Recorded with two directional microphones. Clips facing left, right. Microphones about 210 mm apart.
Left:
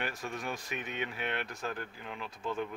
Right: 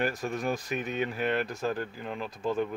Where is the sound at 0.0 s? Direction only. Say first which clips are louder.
Right 8 dB; 40° right (ahead or behind).